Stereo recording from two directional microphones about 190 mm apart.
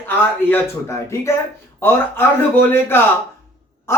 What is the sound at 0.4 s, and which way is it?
Speech, 10° left (ahead or behind).